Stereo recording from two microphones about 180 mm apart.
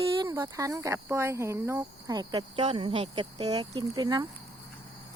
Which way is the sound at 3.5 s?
20° right (ahead or behind).